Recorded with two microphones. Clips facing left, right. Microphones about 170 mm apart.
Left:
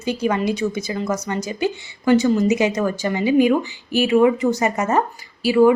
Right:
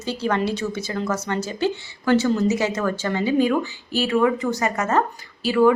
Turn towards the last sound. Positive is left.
turn(degrees=10)  # may be behind; listen again after turning